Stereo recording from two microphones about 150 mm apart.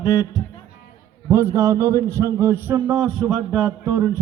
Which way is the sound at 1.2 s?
15° right (ahead or behind).